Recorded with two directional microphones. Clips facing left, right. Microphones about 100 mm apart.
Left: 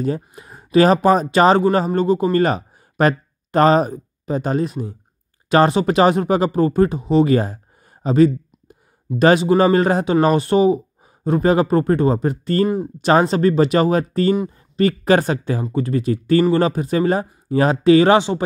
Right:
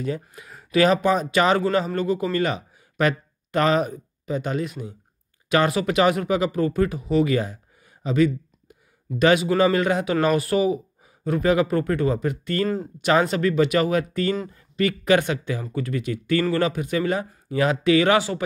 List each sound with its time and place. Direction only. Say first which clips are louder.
0.4 s speech: left 5 dB; 30° left (ahead or behind)